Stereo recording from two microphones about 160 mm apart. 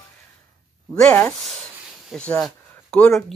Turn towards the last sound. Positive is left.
turn(degrees=5)  # may be behind; listen again after turning